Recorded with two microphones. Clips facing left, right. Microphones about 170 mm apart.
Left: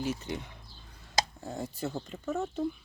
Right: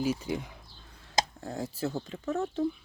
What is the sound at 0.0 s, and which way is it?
Speech, 10° right (ahead or behind).